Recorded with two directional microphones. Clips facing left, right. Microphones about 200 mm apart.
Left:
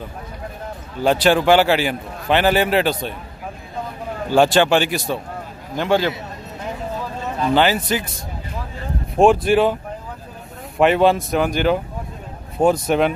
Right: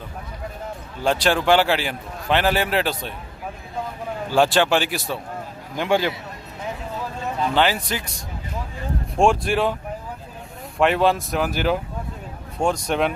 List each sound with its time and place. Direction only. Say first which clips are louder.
1.0 s a man's voice: left 4 dB; 5° left (ahead or behind)
4.4 s a man's voice: left 3 dB; centre (ahead or behind)
5.8 s a man's voice: left 2 dB; 15° right (ahead or behind)
7.5 s a man's voice: left 5 dB; centre (ahead or behind)
9.1 s a man's voice: left 5 dB; centre (ahead or behind)
10.8 s a man's voice: left 4 dB; centre (ahead or behind)